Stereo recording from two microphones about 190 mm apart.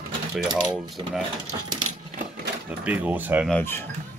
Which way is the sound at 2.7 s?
10° right (ahead or behind).